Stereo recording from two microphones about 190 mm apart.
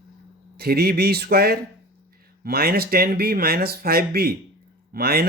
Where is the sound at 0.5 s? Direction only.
55° right (ahead or behind).